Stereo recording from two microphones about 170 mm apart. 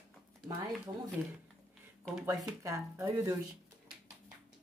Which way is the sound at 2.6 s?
15° right (ahead or behind).